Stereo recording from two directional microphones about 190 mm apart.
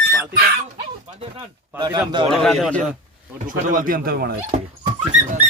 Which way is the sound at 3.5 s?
45° right (ahead or behind).